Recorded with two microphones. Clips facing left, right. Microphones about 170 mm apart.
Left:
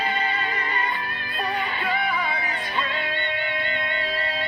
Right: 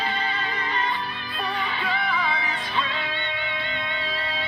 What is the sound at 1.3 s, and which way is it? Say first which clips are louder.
Music: left 2 dB; 50° left (ahead or behind).